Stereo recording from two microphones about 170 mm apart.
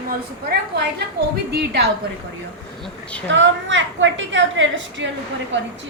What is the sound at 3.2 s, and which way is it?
A woman's voice, 90° right.